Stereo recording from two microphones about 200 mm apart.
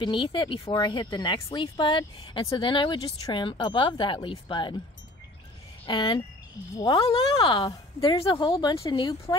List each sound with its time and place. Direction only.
0.0 s speech: 25° left (ahead or behind)
5.9 s speech: 25° left (ahead or behind)